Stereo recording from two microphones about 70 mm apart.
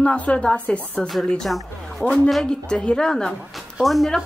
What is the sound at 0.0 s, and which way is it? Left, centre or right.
A woman's voice, centre.